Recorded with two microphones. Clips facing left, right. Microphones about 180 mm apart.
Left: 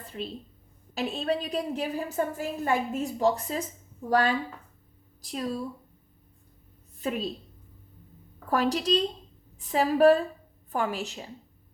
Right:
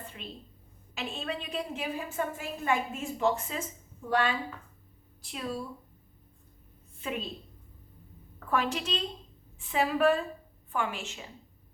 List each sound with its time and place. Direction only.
0.0 s a sound: 35° left (ahead or behind)
0.9 s a woman's voice: 35° left (ahead or behind)
7.0 s a woman's voice: 40° left (ahead or behind)
8.4 s a woman's voice: 40° left (ahead or behind)